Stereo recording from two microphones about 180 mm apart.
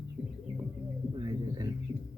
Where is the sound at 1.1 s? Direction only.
25° right (ahead or behind).